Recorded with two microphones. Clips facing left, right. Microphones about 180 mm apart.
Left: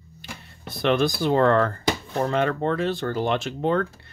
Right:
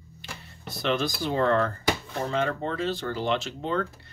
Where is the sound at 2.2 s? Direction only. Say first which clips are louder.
Left 5 dB; 60° left (ahead or behind).